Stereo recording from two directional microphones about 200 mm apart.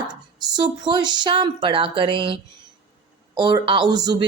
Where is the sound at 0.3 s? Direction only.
20° right (ahead or behind).